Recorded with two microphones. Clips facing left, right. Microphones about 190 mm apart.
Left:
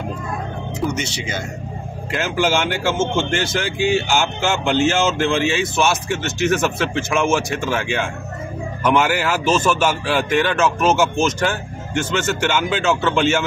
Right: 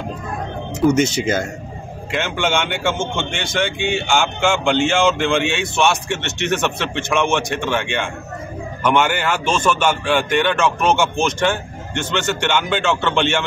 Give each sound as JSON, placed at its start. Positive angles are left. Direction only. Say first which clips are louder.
{"t": 0.7, "sound": "speech", "louder": "right 9 dB", "side_deg": -45}
{"t": 2.0, "sound": "a man's voice", "louder": "left 1 dB", "side_deg": 0}